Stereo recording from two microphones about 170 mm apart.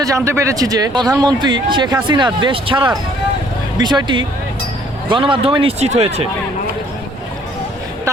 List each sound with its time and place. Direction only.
0.0 s speech: 20° right (ahead or behind); by 6.2 s 40° right (ahead or behind)